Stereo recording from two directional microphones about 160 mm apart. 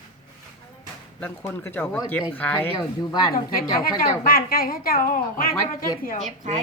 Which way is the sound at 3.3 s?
65° left (ahead or behind).